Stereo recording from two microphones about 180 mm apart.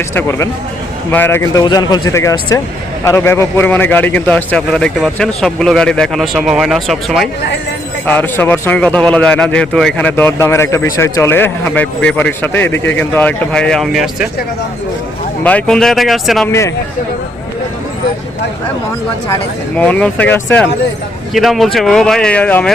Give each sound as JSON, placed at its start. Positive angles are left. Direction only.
{"t": 0.1, "sound": "a man's voice", "side_deg": 15}
{"t": 15.4, "sound": "a man's voice", "side_deg": 5}
{"t": 16.5, "sound": "a man's voice", "side_deg": 15}
{"t": 19.3, "sound": "a man's voice", "side_deg": 10}